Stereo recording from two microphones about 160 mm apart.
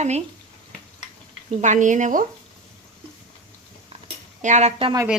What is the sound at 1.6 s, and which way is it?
Speech, 50° right (ahead or behind).